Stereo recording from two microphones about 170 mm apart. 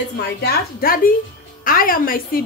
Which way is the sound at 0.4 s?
65° left (ahead or behind).